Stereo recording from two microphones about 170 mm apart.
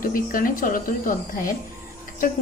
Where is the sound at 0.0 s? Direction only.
55° left (ahead or behind).